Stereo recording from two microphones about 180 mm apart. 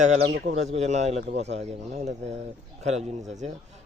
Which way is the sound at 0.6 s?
35° right (ahead or behind).